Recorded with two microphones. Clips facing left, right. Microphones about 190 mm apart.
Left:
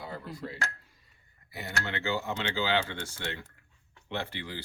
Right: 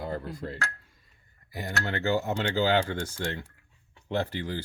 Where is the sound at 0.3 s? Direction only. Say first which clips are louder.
Right 2 dB; 50° right (ahead or behind).